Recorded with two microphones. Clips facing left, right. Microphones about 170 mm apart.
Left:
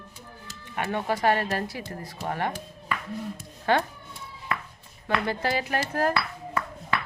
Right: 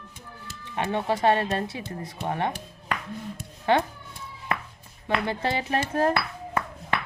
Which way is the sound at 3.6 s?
20° right (ahead or behind).